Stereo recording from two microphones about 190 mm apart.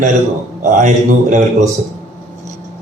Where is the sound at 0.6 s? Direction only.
40° right (ahead or behind).